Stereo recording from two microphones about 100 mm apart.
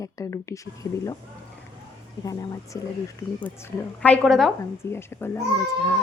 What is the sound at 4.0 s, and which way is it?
Speech, 10° left (ahead or behind).